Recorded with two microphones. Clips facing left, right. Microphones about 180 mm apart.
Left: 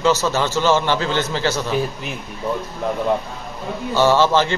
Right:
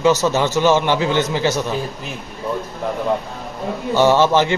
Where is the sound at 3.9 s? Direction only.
15° right (ahead or behind).